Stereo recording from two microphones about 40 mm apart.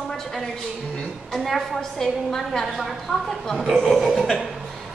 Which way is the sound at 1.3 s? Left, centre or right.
Centre.